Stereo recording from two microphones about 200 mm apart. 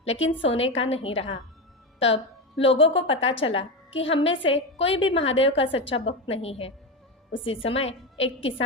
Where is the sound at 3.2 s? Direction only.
70° left (ahead or behind).